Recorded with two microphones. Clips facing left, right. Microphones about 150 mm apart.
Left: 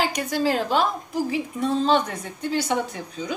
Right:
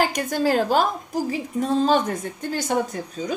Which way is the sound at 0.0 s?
45° right (ahead or behind).